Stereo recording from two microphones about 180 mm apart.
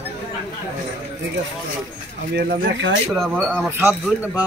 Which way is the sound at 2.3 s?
80° right.